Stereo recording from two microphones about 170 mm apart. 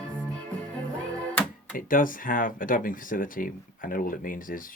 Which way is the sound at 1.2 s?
10° left (ahead or behind).